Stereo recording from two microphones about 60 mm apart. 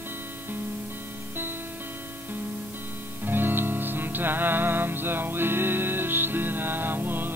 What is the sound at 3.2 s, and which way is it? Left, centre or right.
Music, right.